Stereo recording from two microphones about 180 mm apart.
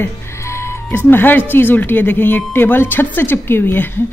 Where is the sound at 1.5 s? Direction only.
10° left (ahead or behind).